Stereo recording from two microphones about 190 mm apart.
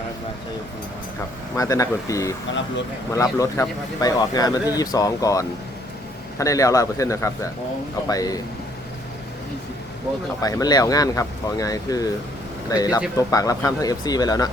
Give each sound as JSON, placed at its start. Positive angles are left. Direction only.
{"t": 1.5, "sound": "speech", "side_deg": 15}
{"t": 2.5, "sound": "speech", "side_deg": 70}
{"t": 3.1, "sound": "speech", "side_deg": 15}
{"t": 10.4, "sound": "speech", "side_deg": 20}